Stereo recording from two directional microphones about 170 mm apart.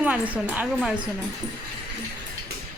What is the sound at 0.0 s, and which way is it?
Speech, 10° right (ahead or behind).